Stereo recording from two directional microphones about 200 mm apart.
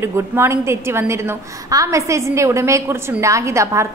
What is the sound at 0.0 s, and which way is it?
A woman's voice, 15° right (ahead or behind).